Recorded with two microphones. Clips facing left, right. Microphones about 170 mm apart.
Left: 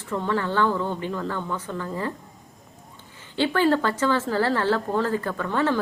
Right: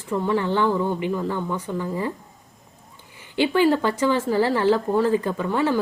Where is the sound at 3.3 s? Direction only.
15° right (ahead or behind).